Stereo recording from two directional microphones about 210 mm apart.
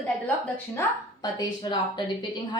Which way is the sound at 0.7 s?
20° left (ahead or behind).